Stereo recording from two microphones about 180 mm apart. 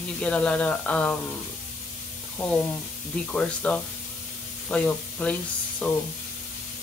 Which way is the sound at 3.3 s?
5° left (ahead or behind).